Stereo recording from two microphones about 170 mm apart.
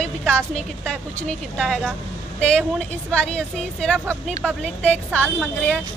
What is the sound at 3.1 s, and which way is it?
A woman's voice, 5° left (ahead or behind).